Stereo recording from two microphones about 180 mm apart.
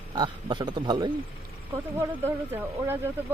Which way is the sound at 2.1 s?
10° right (ahead or behind).